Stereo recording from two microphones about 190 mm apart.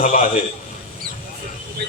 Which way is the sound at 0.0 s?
35° left (ahead or behind).